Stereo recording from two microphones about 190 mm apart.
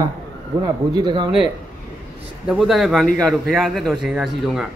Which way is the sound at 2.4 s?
Centre (ahead or behind).